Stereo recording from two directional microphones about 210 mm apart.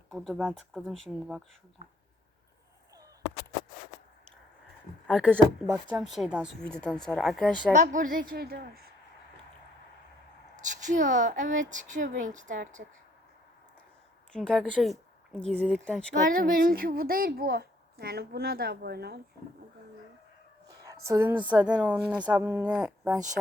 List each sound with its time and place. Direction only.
0.1 s speech: centre (ahead or behind)
5.0 s speech: 5° right (ahead or behind)
7.7 s a woman's voice: 40° right (ahead or behind)
10.6 s speech: 35° right (ahead or behind)
14.3 s speech: 5° left (ahead or behind)
16.3 s a woman's voice: 40° right (ahead or behind)
20.8 s speech: 15° right (ahead or behind)